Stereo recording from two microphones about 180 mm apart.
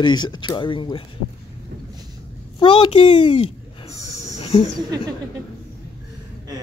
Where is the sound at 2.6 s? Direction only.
30° left (ahead or behind).